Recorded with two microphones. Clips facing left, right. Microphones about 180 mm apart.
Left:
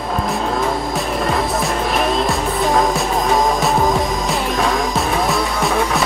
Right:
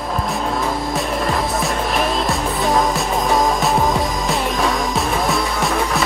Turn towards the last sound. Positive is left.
turn(degrees=0)  # may be behind; listen again after turning